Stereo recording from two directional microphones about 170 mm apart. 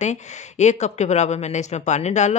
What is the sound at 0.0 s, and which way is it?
Speech, 45° left (ahead or behind).